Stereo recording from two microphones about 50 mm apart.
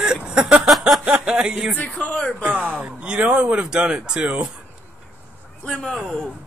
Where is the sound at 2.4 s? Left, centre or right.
Right.